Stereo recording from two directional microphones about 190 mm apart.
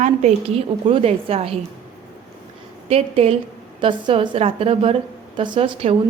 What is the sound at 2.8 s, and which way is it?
A woman's voice, 30° right (ahead or behind).